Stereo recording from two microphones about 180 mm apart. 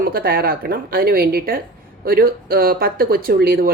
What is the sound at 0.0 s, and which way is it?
Speech, 55° right (ahead or behind).